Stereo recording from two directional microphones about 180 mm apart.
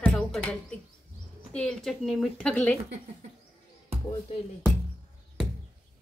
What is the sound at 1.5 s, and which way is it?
A woman's voice, 5° left (ahead or behind).